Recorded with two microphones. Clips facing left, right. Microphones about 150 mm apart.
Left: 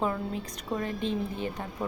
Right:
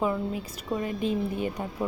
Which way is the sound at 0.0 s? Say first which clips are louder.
Right 2 dB; 10° right (ahead or behind).